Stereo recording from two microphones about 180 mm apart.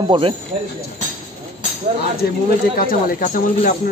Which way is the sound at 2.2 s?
60° left (ahead or behind).